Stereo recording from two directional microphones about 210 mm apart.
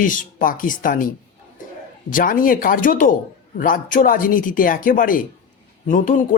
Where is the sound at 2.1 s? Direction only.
40° left (ahead or behind).